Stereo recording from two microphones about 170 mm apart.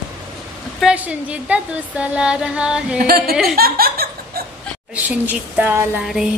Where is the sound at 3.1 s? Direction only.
60° right (ahead or behind).